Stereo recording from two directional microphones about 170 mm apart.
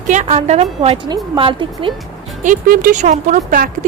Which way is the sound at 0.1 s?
45° right (ahead or behind).